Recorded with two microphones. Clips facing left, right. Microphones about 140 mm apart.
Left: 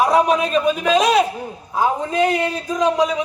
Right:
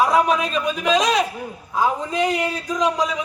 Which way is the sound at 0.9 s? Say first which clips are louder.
Left 2 dB; 5° left (ahead or behind).